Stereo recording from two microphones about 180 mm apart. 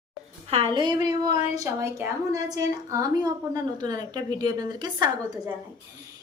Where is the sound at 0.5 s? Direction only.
30° right (ahead or behind).